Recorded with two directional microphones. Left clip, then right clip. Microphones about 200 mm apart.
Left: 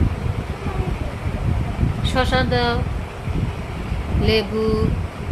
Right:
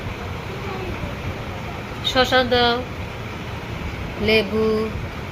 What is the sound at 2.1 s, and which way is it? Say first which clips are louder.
Speech: right 3 dB; 15° left (ahead or behind).